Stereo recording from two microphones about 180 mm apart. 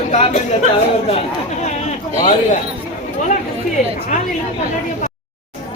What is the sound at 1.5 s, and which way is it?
Speech, 40° left (ahead or behind).